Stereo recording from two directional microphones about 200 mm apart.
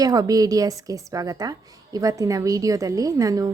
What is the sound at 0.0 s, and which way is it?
A woman's voice, 20° right (ahead or behind).